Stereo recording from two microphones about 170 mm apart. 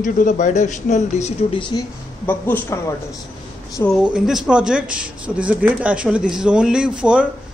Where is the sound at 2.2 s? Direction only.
10° left (ahead or behind).